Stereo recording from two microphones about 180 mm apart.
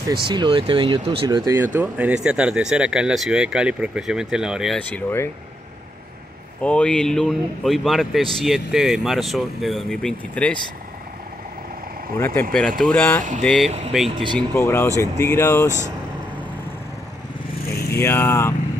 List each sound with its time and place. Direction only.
0.3 s speech: 25° right (ahead or behind)
1.5 s speech: 10° right (ahead or behind)
4.7 s speech: 10° left (ahead or behind)
6.6 s speech: 5° left (ahead or behind)
12.5 s speech: centre (ahead or behind)
14.0 s speech: 25° right (ahead or behind)
14.5 s speech: 15° left (ahead or behind)
17.7 s vehicle: 60° left (ahead or behind)
18.0 s speech: 15° left (ahead or behind)